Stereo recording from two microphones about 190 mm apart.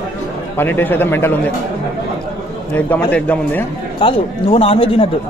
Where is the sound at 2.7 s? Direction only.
10° left (ahead or behind).